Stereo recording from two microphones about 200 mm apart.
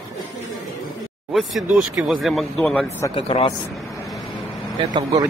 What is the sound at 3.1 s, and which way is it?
Speech, 25° left (ahead or behind).